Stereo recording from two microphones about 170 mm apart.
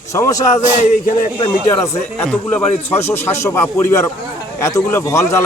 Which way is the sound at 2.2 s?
10° left (ahead or behind).